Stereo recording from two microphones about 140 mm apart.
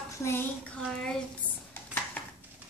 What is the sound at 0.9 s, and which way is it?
Speech, 5° left (ahead or behind).